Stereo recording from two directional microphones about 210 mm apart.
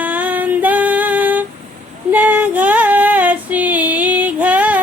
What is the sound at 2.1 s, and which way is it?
Female singing, 5° right (ahead or behind).